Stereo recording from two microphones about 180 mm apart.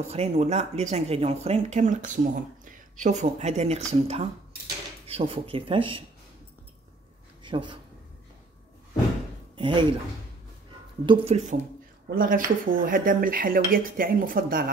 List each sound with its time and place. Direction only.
0.0 s speech: 35° right (ahead or behind)
7.4 s speech: 25° right (ahead or behind)
9.6 s speech: 25° right (ahead or behind)
11.1 s speech: 35° right (ahead or behind)
12.1 s speech: 50° right (ahead or behind)